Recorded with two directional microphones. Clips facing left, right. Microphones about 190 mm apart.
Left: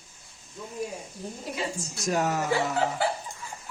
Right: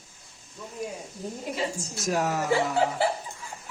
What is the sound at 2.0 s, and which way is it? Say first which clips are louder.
Speech: even; centre (ahead or behind).